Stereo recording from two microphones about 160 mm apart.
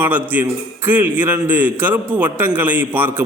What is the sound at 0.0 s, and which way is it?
A man's voice, 10° right (ahead or behind).